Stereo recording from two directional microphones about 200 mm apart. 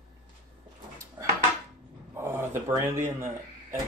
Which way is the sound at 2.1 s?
10° right (ahead or behind).